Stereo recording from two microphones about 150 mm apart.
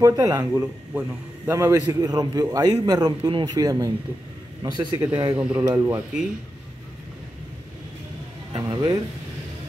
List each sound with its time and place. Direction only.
0.0 s a man's voice: 20° right (ahead or behind)
5.3 s speech: 10° right (ahead or behind)
8.5 s a man's voice: 35° right (ahead or behind)